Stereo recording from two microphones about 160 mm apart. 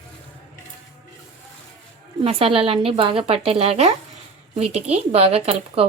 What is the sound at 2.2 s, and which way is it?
Speech, 35° right (ahead or behind).